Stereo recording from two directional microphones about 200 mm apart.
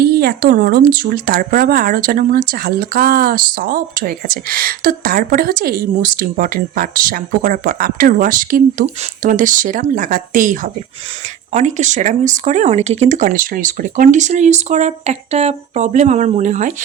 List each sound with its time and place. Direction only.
0.0 s speech: 50° right (ahead or behind)